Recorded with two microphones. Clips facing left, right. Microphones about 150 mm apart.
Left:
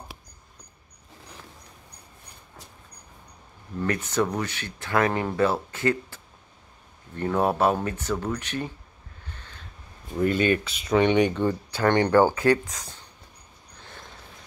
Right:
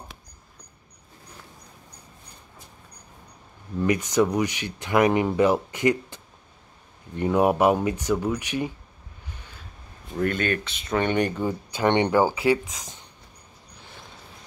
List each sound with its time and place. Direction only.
3.8 s speech: 15° right (ahead or behind)
9.3 s a sound: 10° right (ahead or behind)
10.1 s speech: 5° left (ahead or behind)
11.7 s speech: 15° right (ahead or behind)